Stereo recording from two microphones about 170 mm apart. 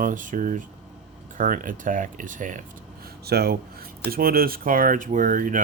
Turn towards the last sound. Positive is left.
turn(degrees=-50)  # may be behind; listen again after turning